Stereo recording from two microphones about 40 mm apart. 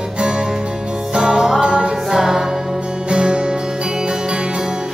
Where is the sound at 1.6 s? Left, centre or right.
Right.